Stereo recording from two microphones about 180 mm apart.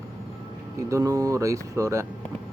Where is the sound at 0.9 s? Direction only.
20° right (ahead or behind).